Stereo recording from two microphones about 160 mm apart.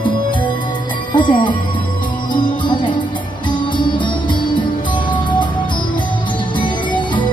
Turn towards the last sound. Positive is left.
turn(degrees=30)  # may be behind; listen again after turning